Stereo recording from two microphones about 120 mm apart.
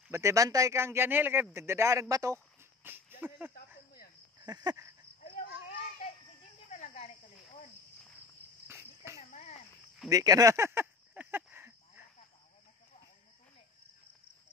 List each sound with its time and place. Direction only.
0.1 s a man's voice: 25° right (ahead or behind)
4.4 s a sound: 35° right (ahead or behind)
6.7 s cricket: 80° left
8.6 s cricket: 20° right (ahead or behind)
9.3 s cricket: 65° left (ahead or behind)
10.0 s a sound: 30° right (ahead or behind)